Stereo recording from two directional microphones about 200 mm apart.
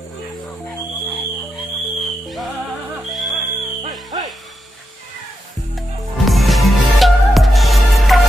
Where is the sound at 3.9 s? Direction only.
20° right (ahead or behind).